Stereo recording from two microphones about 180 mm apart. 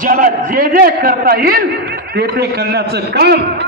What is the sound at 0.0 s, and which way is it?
A man's voice, 50° right (ahead or behind).